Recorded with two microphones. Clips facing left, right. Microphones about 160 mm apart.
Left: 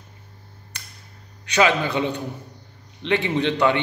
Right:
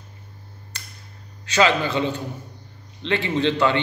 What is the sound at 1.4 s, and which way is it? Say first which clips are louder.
A man's voice: even; 15° left (ahead or behind).